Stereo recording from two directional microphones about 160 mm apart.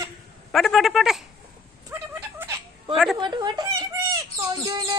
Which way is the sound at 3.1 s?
30° right (ahead or behind).